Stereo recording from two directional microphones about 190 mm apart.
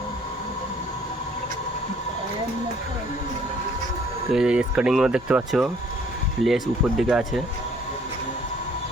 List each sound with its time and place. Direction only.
4.3 s speech: 5° right (ahead or behind)